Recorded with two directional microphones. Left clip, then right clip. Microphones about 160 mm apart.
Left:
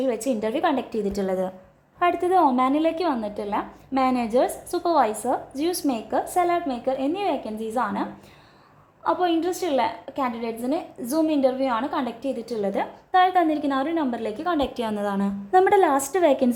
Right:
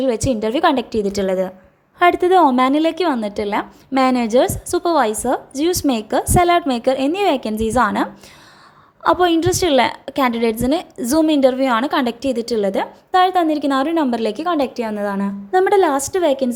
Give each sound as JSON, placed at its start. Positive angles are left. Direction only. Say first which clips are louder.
{"t": 0.0, "sound": "a woman's voice", "louder": "right 6 dB", "side_deg": -25}
{"t": 0.9, "sound": "a woman's voice", "louder": "right 7 dB", "side_deg": -15}
{"t": 2.0, "sound": "a woman's voice", "louder": "right 7 dB", "side_deg": -30}
{"t": 9.0, "sound": "a woman's voice", "louder": "right 8 dB", "side_deg": -35}